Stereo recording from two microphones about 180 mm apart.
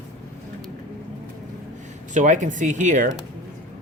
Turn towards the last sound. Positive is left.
turn(degrees=-45)  # may be behind; listen again after turning